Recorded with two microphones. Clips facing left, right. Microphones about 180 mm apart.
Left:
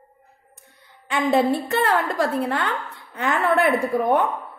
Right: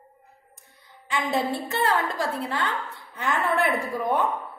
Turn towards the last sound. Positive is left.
turn(degrees=55)  # may be behind; listen again after turning